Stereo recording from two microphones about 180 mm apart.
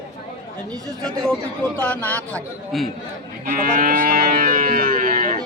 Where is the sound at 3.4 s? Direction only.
50° right (ahead or behind).